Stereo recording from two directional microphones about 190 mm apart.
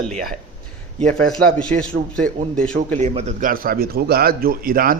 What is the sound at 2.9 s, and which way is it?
A man's voice, 35° right (ahead or behind).